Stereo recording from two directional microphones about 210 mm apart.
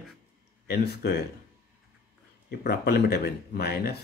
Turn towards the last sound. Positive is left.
turn(degrees=50)  # may be behind; listen again after turning